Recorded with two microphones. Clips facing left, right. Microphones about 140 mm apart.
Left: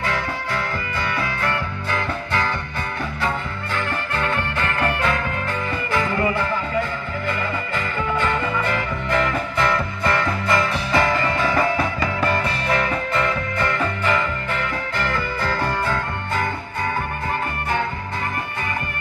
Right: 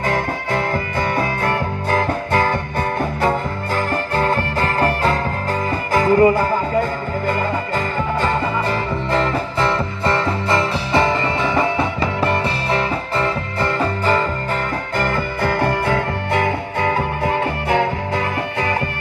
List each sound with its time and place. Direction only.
0.0 s music: 50° right (ahead or behind)
15.0 s music: 50° right (ahead or behind); by 18.8 s 85° right